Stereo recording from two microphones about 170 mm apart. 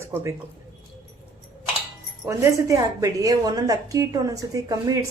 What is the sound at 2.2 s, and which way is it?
A woman's voice, 20° right (ahead or behind).